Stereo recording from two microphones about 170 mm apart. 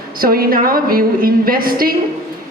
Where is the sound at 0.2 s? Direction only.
60° right (ahead or behind).